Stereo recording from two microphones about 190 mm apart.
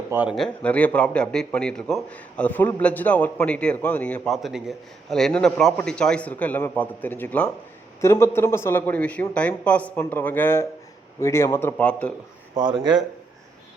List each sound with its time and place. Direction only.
0.1 s a man's voice: 10° right (ahead or behind)
0.3 s a man's voice: 5° left (ahead or behind)
12.5 s speech: 20° right (ahead or behind)